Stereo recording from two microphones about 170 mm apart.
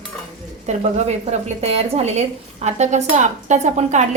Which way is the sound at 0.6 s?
40° right (ahead or behind).